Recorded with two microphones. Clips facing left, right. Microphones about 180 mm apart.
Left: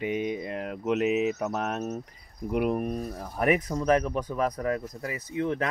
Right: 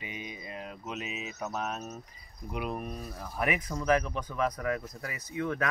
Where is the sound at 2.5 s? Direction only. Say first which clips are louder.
Left 9 dB; 55° left (ahead or behind).